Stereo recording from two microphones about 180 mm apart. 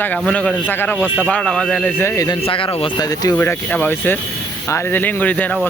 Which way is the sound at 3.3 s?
10° left (ahead or behind).